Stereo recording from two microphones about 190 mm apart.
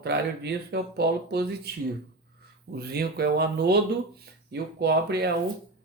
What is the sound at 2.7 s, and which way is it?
Speech, 55° right (ahead or behind).